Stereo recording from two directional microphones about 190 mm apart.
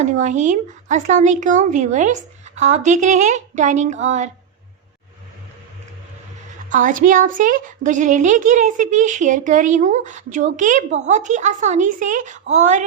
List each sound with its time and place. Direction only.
0.0 s a woman's voice: 40° right (ahead or behind)
6.7 s a woman's voice: 45° right (ahead or behind)